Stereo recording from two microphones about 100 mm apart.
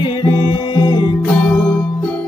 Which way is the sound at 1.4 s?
10° left (ahead or behind).